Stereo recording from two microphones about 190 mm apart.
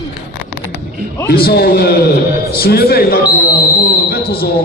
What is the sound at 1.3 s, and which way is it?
A man's voice, 55° left (ahead or behind).